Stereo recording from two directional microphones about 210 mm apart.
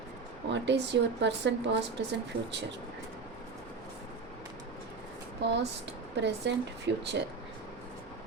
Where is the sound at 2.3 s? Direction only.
25° right (ahead or behind).